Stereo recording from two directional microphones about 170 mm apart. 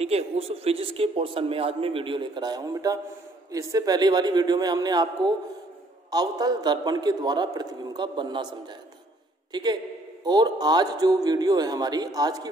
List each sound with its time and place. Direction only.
0.0 s a man's voice: 35° right (ahead or behind)
9.5 s a man's voice: 25° right (ahead or behind)